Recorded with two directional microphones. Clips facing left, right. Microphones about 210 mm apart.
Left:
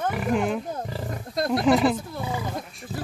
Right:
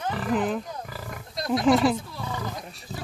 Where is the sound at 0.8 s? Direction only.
25° left (ahead or behind).